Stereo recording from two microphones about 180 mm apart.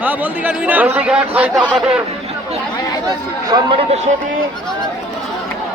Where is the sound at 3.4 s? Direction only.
25° right (ahead or behind).